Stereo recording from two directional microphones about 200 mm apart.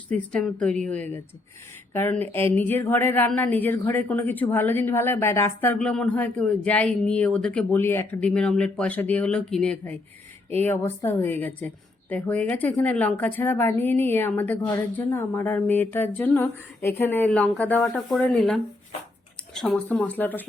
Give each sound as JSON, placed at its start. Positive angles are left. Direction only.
{"t": 0.1, "sound": "speech", "side_deg": 5}